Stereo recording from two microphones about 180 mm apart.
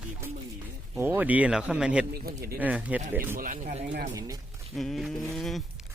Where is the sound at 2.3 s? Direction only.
55° right (ahead or behind).